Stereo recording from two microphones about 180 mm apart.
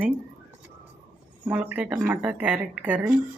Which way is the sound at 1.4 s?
10° right (ahead or behind).